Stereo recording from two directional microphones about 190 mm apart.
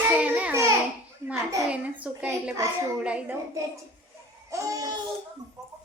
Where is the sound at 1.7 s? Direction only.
5° right (ahead or behind).